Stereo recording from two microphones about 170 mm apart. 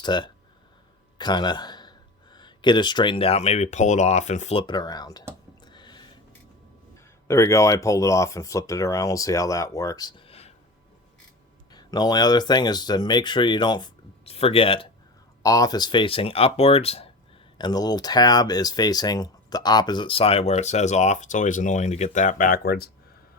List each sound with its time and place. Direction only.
0.0 s speech: 25° left (ahead or behind); by 4.6 s 40° left (ahead or behind)
4.6 s speech: 25° left (ahead or behind)
5.6 s a sound: 25° left (ahead or behind)
7.3 s speech: 15° left (ahead or behind); by 10.5 s 35° left (ahead or behind)
11.7 s speech: 25° left (ahead or behind)
15.4 s speech: 20° left (ahead or behind); by 17.1 s 35° left (ahead or behind)
17.6 s speech: 25° left (ahead or behind); by 22.9 s 65° left (ahead or behind)